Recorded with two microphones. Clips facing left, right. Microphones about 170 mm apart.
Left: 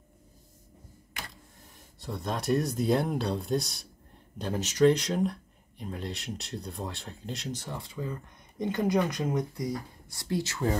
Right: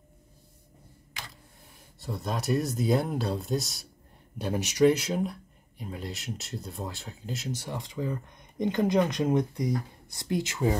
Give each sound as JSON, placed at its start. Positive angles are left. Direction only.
{"t": 2.0, "sound": "speech", "side_deg": 0}
{"t": 4.4, "sound": "speech", "side_deg": -15}